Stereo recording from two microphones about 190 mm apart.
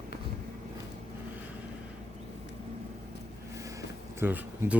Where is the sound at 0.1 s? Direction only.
55° left (ahead or behind).